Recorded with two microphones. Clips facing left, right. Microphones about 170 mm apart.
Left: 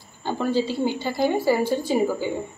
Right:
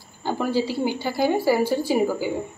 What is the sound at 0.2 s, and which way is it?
A woman's voice, 10° right (ahead or behind).